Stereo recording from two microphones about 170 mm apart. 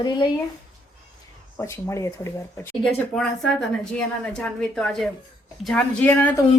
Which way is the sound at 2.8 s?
Centre (ahead or behind).